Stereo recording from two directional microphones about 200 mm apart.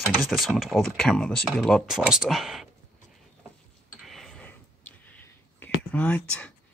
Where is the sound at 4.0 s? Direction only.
Centre (ahead or behind).